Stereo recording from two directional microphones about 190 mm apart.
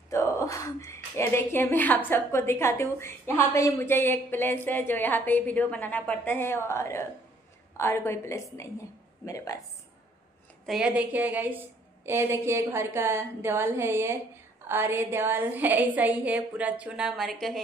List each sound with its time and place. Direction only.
0.1 s a woman's voice: 15° left (ahead or behind)
10.7 s a woman's voice: 5° right (ahead or behind)